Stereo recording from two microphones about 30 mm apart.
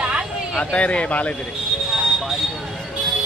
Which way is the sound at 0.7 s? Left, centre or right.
Left.